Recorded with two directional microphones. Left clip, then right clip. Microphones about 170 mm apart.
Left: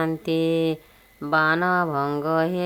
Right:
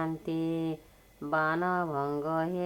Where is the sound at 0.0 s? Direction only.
30° left (ahead or behind).